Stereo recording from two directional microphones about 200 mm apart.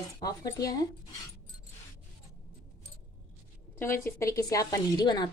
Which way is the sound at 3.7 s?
10° left (ahead or behind).